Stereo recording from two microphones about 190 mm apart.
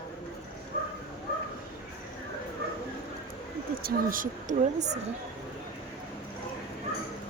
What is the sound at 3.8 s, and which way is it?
Speech, 45° right (ahead or behind).